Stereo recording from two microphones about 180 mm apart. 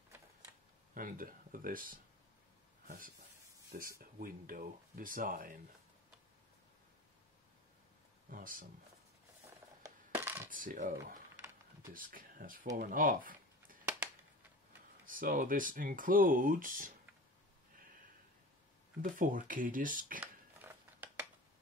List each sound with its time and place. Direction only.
0.9 s speech: 50° right (ahead or behind)
3.7 s speech: 55° right (ahead or behind)
8.3 s speech: 50° right (ahead or behind)
9.8 s coin: 15° right (ahead or behind)
10.5 s speech: 50° right (ahead or behind)
15.0 s speech: 50° right (ahead or behind)
18.9 s speech: 50° right (ahead or behind)
20.2 s a sound: 10° right (ahead or behind)